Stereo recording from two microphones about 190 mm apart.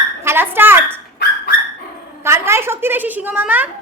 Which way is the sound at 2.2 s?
15° right (ahead or behind).